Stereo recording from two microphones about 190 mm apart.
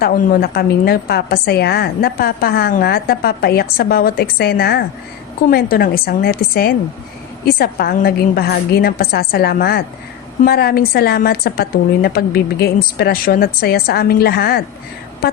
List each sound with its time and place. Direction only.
0.0 s a woman's voice: 50° left (ahead or behind)